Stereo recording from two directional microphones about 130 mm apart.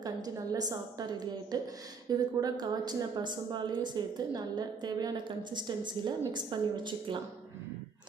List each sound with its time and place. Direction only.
0.0 s a woman's voice: 30° right (ahead or behind)